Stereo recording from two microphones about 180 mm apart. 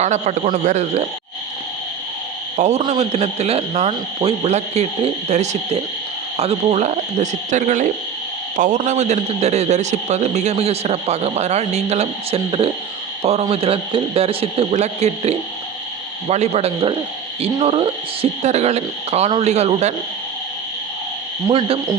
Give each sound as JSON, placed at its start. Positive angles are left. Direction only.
{"t": 0.0, "sound": "a man's voice", "side_deg": -40}
{"t": 2.6, "sound": "a man's voice", "side_deg": -40}
{"t": 21.4, "sound": "speech", "side_deg": -20}